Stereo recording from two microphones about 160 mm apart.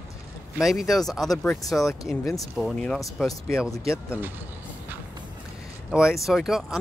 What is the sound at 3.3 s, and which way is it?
Speech, 15° left (ahead or behind).